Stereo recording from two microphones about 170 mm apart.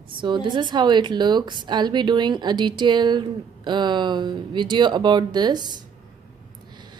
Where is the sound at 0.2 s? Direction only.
25° right (ahead or behind).